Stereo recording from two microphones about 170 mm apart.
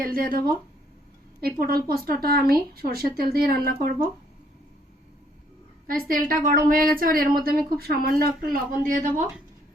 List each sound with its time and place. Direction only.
0.0 s speech: 60° right (ahead or behind)
5.9 s speech: 55° right (ahead or behind)